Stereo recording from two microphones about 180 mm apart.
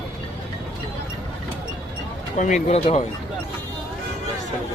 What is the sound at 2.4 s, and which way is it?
Speech, 45° left (ahead or behind).